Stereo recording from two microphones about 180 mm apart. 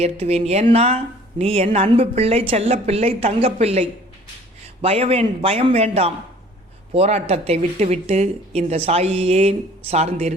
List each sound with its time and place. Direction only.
0.0 s speech: 35° right (ahead or behind)